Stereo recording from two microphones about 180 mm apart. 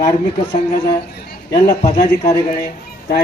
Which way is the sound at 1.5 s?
60° left (ahead or behind).